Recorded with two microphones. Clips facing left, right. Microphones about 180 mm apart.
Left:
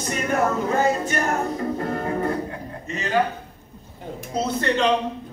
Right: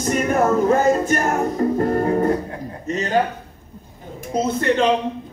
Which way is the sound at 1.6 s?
35° right (ahead or behind).